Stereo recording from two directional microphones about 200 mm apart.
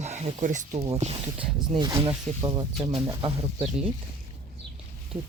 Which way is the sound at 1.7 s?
20° right (ahead or behind).